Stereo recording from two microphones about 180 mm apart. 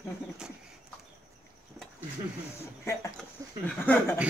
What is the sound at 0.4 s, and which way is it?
Bird, 5° right (ahead or behind).